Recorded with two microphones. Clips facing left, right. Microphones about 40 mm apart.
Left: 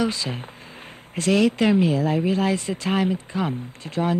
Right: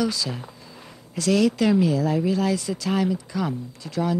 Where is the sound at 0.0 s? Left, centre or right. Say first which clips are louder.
Left 1 dB; left.